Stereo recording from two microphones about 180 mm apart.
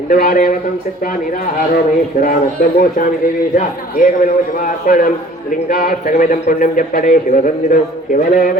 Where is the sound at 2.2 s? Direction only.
50° left (ahead or behind).